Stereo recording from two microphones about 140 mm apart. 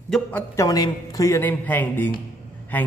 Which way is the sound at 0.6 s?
25° left (ahead or behind).